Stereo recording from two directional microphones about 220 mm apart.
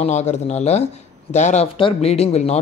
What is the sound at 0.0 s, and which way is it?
Speech, 30° left (ahead or behind).